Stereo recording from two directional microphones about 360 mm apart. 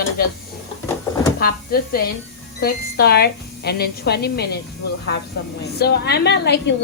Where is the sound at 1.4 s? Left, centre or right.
Left.